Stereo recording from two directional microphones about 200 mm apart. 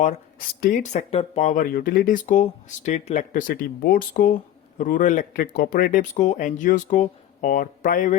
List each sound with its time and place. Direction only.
0.0 s speech: 40° left (ahead or behind)